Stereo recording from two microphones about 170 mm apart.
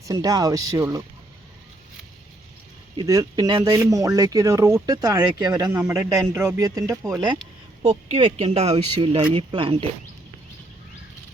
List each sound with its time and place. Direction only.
0.0 s speech: 20° right (ahead or behind)
2.9 s speech: 25° right (ahead or behind)
7.9 s speech: 40° right (ahead or behind)